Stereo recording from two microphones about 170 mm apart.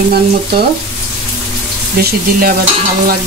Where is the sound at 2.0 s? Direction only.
60° right (ahead or behind).